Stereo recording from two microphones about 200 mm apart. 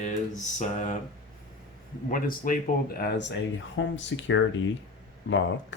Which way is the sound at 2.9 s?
60° left (ahead or behind).